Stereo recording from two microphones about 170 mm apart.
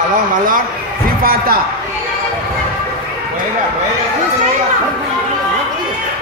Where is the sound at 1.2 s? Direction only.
60° right (ahead or behind).